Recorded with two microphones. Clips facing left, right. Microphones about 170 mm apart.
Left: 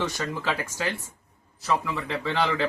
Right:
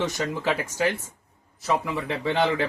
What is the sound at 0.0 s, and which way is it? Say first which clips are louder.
A man's voice: right 3 dB; 20° right (ahead or behind).